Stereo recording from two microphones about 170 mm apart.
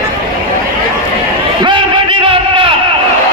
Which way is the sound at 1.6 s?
30° right (ahead or behind).